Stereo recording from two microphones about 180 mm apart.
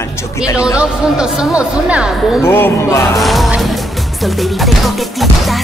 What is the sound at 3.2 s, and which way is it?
Speech, centre (ahead or behind).